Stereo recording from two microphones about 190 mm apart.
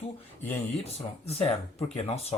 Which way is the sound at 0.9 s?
35° left (ahead or behind).